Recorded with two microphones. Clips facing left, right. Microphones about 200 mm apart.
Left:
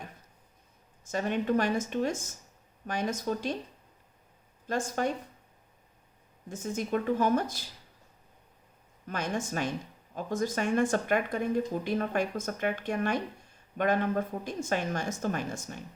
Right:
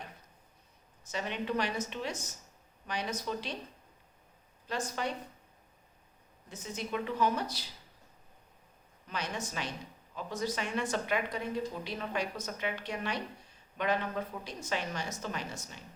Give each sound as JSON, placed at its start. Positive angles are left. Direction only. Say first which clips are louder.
{"t": 1.0, "sound": "speech", "louder": "left 6 dB", "side_deg": 45}
{"t": 4.6, "sound": "speech", "louder": "left 5 dB", "side_deg": 45}
{"t": 6.5, "sound": "speech", "louder": "left 7 dB", "side_deg": 50}
{"t": 9.0, "sound": "speech", "louder": "left 5 dB", "side_deg": 50}